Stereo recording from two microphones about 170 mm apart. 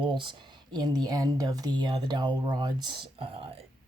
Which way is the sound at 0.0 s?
30° right (ahead or behind).